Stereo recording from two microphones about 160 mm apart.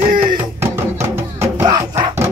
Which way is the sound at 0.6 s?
15° right (ahead or behind).